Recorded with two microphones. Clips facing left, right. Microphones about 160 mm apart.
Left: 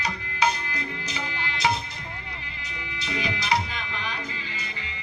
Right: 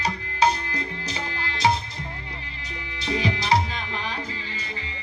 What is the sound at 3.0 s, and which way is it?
Music, 30° right (ahead or behind).